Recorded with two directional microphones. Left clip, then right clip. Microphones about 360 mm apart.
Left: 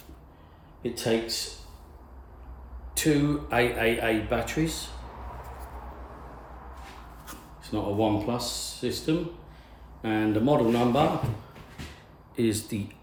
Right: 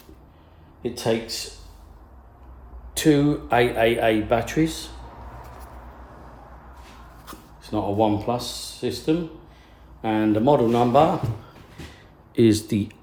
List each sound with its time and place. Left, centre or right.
0.8 s speech: centre
2.9 s speech: right
7.3 s speech: centre
12.3 s speech: right